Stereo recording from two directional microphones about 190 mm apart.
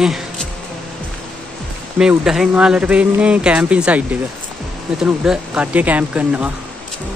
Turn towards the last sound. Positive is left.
turn(degrees=-5)  # may be behind; listen again after turning